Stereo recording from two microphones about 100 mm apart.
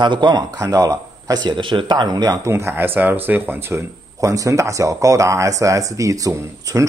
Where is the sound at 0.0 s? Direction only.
50° right (ahead or behind).